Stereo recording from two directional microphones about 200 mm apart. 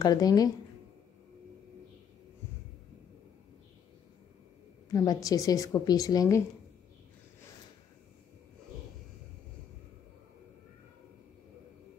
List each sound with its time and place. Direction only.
0.0 s speech: 20° left (ahead or behind)
4.8 s a woman's voice: 20° left (ahead or behind)